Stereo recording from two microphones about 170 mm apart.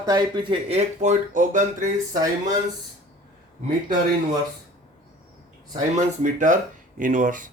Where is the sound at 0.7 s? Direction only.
45° right (ahead or behind).